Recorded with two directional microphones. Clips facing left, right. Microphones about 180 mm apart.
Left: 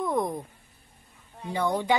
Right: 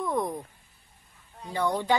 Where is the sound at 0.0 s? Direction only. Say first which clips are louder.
Left 2 dB; 15° left (ahead or behind).